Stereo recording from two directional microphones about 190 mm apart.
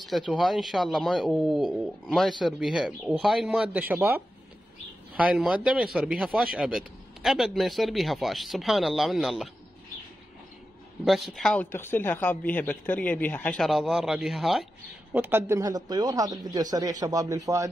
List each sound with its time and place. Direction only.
0.0 s a man's voice: centre (ahead or behind)
11.1 s speech: centre (ahead or behind)
15.1 s a man's voice: 10° right (ahead or behind)